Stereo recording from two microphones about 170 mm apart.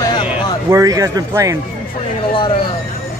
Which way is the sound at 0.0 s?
25° left (ahead or behind).